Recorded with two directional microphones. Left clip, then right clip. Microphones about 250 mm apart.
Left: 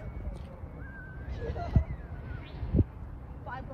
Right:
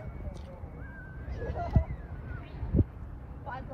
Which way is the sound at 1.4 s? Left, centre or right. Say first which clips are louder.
Right 2 dB; centre.